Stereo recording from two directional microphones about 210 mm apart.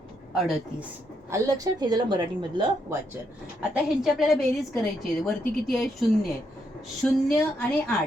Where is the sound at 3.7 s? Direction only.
Centre (ahead or behind).